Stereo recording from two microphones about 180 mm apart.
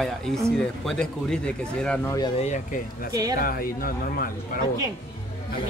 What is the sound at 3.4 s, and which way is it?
Speech, 55° left (ahead or behind).